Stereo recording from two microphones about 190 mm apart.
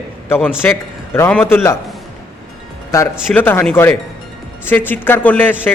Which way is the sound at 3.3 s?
10° left (ahead or behind).